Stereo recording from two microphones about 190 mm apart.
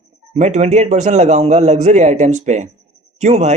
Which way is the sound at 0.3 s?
40° right (ahead or behind).